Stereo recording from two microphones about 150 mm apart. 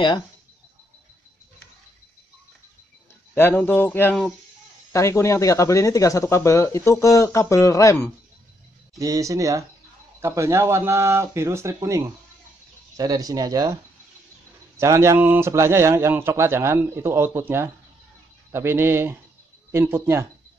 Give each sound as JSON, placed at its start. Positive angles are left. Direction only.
{"t": 3.3, "sound": "speech", "side_deg": 15}
{"t": 8.9, "sound": "speech", "side_deg": -20}
{"t": 14.8, "sound": "a man's voice", "side_deg": -20}